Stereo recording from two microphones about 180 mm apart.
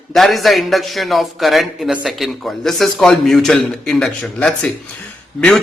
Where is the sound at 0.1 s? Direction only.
Centre (ahead or behind).